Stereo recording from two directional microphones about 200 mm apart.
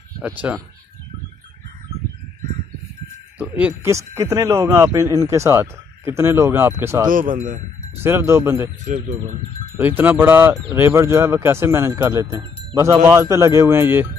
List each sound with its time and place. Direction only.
0.2 s speech: 5° right (ahead or behind)
3.3 s speech: 5° right (ahead or behind)
7.1 s speech: 45° right (ahead or behind)
8.0 s speech: 10° right (ahead or behind)
8.8 s speech: 40° right (ahead or behind)
9.8 s speech: 10° right (ahead or behind)